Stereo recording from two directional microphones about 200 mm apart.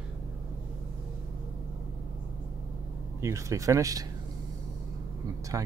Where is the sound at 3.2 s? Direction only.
15° right (ahead or behind).